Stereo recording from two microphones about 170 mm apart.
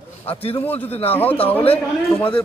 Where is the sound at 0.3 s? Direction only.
35° left (ahead or behind).